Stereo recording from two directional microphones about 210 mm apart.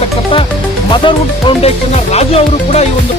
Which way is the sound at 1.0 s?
25° left (ahead or behind).